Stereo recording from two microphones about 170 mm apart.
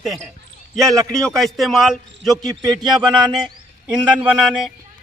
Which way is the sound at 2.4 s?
25° right (ahead or behind).